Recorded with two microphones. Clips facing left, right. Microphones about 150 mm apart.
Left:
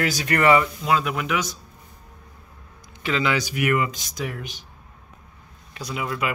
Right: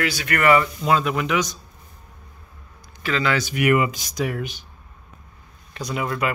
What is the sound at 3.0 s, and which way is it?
Speech, 15° left (ahead or behind).